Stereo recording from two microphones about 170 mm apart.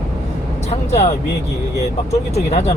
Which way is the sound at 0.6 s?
40° left (ahead or behind).